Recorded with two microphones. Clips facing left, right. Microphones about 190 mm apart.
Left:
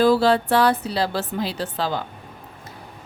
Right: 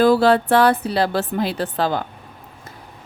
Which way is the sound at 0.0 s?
55° right (ahead or behind).